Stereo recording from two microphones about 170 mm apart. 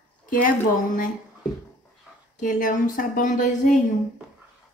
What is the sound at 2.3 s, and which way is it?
Speech, 50° left (ahead or behind).